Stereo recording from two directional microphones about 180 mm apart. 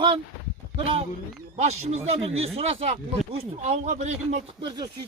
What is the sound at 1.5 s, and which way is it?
A man's voice, 40° right (ahead or behind).